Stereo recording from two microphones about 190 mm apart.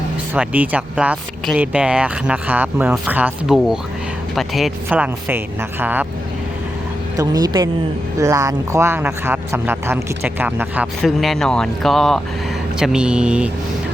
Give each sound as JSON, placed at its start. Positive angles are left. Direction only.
{"t": 0.3, "sound": "speech", "side_deg": -10}
{"t": 7.2, "sound": "speech", "side_deg": -20}